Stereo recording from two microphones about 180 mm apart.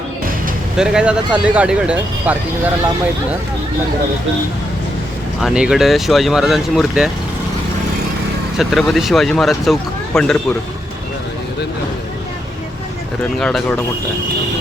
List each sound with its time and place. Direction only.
0.8 s speech: 5° right (ahead or behind)
5.4 s speech: 5° right (ahead or behind)
8.5 s speech: centre (ahead or behind)
13.4 s speech: 5° left (ahead or behind)